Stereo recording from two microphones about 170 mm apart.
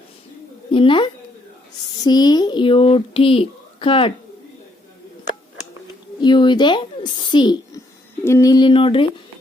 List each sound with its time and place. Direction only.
0.7 s speech: 30° left (ahead or behind)
6.1 s a child's voice: 25° left (ahead or behind)